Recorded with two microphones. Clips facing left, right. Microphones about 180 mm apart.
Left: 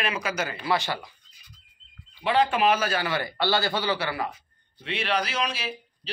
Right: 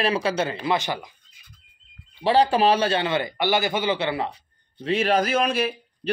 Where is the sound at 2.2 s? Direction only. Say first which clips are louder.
Right 4 dB; 35° right (ahead or behind).